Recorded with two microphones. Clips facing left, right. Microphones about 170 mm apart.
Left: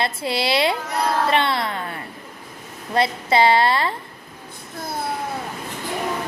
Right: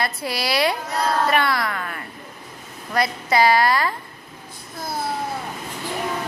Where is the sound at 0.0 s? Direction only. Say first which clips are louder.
Left 2 dB; 25° left (ahead or behind).